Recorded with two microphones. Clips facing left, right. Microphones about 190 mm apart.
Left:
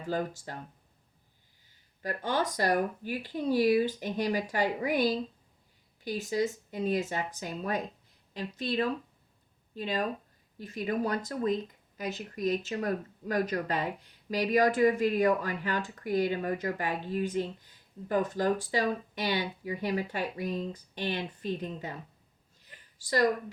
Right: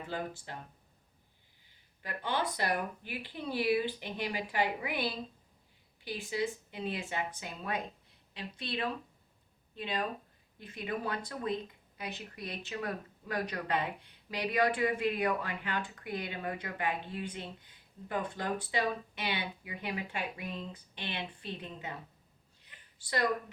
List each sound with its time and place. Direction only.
0.1 s speech: 40° left (ahead or behind)
2.0 s speech: 40° left (ahead or behind)
22.6 s a sound: 40° left (ahead or behind)